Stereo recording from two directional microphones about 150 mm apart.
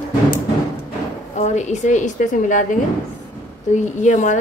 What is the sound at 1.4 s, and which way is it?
A woman's voice, 50° left (ahead or behind).